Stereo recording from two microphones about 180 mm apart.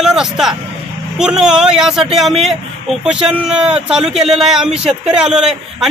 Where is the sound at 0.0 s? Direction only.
5° right (ahead or behind).